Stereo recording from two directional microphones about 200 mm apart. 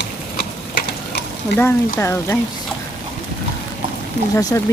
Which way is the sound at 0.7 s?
55° left (ahead or behind).